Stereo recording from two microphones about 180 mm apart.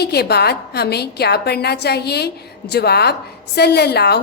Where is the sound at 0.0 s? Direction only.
65° left (ahead or behind).